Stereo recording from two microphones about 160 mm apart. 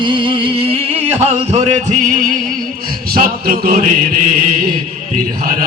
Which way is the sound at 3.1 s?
65° right (ahead or behind).